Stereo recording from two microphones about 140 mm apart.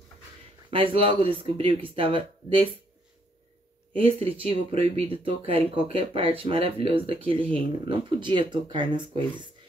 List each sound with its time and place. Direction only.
0.7 s speech: 40° right (ahead or behind)
3.9 s speech: 40° right (ahead or behind)